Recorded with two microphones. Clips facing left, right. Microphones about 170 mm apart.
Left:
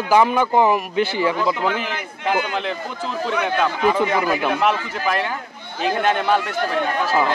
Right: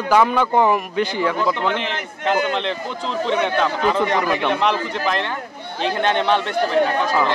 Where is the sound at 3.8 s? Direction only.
10° left (ahead or behind).